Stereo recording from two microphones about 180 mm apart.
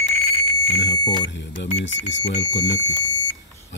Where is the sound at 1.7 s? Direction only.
85° left.